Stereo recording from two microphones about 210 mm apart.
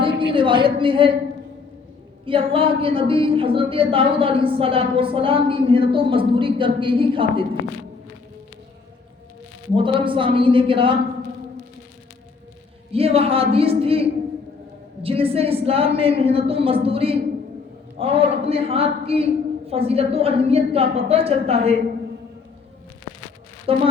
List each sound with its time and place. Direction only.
0.0 s a woman's voice: 25° right (ahead or behind)
2.2 s a woman's voice: 25° right (ahead or behind)
9.7 s a woman's voice: 25° right (ahead or behind)
12.9 s a woman's voice: 30° right (ahead or behind)
23.7 s a woman's voice: 25° right (ahead or behind)